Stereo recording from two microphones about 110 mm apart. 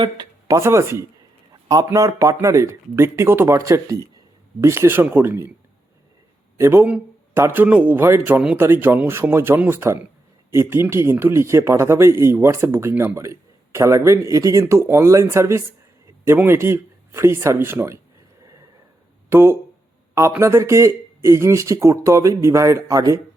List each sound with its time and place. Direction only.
0.4 s speech: 25° right (ahead or behind)
6.6 s speech: 20° right (ahead or behind)
19.3 s speech: 20° right (ahead or behind)